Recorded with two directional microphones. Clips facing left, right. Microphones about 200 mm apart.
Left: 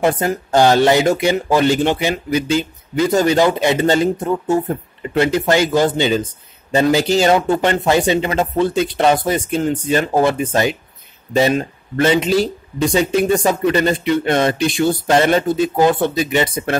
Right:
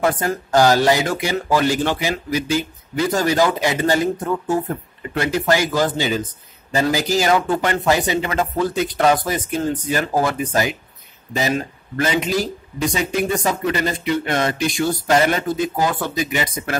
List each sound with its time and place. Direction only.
0.0 s speech: 25° left (ahead or behind)